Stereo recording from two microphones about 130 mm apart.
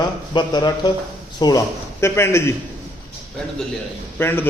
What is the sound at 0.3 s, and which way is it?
Speech, 35° left (ahead or behind).